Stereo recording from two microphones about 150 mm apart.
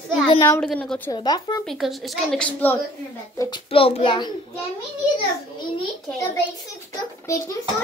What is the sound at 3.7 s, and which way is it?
Speech, 40° left (ahead or behind).